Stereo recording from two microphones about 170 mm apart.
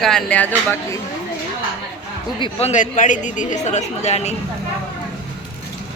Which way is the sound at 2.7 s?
50° left (ahead or behind).